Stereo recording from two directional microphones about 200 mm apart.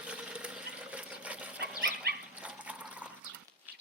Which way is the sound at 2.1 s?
50° right (ahead or behind).